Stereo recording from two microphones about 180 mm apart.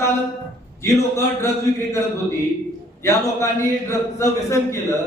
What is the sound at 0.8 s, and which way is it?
Speech, 15° left (ahead or behind).